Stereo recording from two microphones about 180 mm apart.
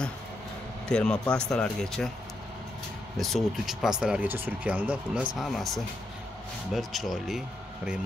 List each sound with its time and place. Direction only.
0.8 s speech: 5° left (ahead or behind)
3.2 s speech: centre (ahead or behind)
6.7 s speech: centre (ahead or behind)